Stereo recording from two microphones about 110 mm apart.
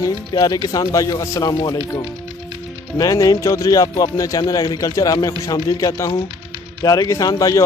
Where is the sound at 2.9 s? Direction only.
30° left (ahead or behind).